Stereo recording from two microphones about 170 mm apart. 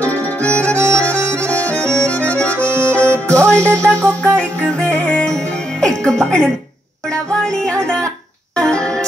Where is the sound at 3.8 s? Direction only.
5° left (ahead or behind).